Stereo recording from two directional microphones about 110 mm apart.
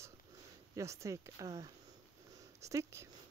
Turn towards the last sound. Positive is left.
turn(degrees=-25)  # may be behind; listen again after turning